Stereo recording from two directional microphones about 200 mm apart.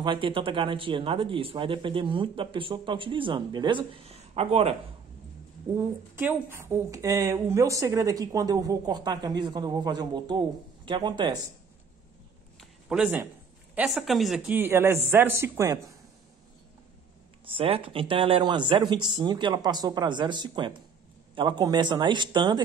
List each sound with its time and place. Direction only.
0.0 s speech: 25° right (ahead or behind)
5.8 s a woman's voice: 10° right (ahead or behind)
12.5 s a sound: 5° right (ahead or behind)
13.7 s a woman's voice: centre (ahead or behind)
17.5 s speech: 25° right (ahead or behind)